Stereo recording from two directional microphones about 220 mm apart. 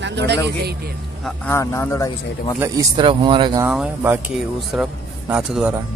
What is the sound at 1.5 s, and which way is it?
Speech, 10° left (ahead or behind).